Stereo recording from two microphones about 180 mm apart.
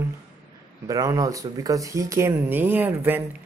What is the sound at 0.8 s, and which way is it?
Speech, 20° right (ahead or behind).